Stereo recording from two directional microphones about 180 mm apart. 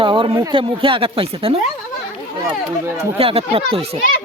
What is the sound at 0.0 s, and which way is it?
Speech, 30° right (ahead or behind).